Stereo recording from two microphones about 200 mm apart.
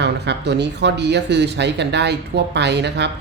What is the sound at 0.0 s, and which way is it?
Speech, 55° right (ahead or behind).